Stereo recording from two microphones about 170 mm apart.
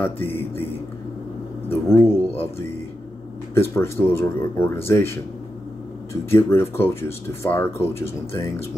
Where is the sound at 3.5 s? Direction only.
15° left (ahead or behind).